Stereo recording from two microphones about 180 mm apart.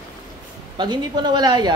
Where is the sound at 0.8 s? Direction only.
25° right (ahead or behind).